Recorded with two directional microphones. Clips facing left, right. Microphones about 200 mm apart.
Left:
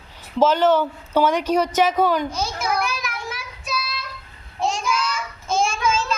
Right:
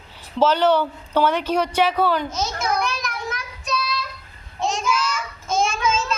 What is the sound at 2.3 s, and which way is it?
Speech, 30° left (ahead or behind).